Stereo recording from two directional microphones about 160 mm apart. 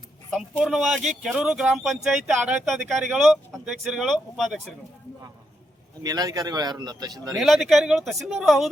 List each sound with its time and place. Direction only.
0.3 s speech: centre (ahead or behind)
6.0 s speech: 25° right (ahead or behind)
7.3 s speech: centre (ahead or behind)